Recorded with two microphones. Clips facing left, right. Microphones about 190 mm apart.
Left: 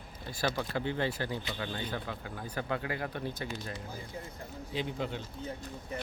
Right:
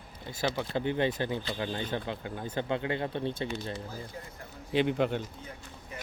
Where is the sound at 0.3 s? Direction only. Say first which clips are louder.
Right 1 dB; 20° right (ahead or behind).